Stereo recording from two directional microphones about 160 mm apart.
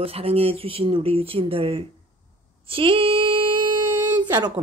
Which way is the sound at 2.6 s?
35° right (ahead or behind).